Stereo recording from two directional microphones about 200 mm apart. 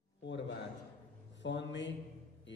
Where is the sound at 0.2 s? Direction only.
60° left (ahead or behind).